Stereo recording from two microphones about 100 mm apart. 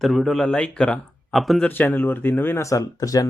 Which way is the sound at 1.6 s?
20° left (ahead or behind).